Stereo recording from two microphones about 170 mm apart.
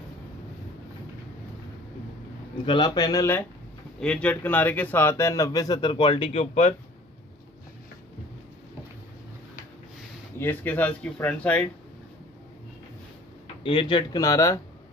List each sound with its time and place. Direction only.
2.5 s speech: 25° left (ahead or behind)
10.4 s speech: 10° left (ahead or behind)
13.7 s speech: 30° left (ahead or behind)